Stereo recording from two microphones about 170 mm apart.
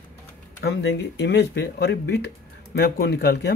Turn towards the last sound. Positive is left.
turn(degrees=80)